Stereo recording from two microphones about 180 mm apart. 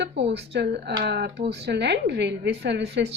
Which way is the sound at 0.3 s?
70° right (ahead or behind).